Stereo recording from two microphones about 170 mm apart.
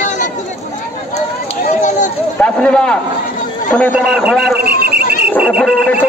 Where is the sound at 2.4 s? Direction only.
5° left (ahead or behind).